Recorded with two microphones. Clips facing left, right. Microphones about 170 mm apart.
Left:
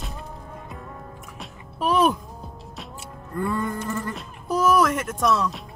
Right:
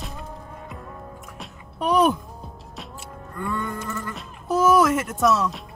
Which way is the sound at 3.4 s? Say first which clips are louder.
Left 2 dB; 35° left (ahead or behind).